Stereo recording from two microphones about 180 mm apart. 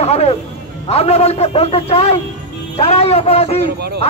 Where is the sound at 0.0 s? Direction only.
35° left (ahead or behind).